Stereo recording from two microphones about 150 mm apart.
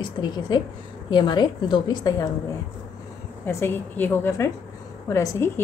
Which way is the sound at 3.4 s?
15° left (ahead or behind).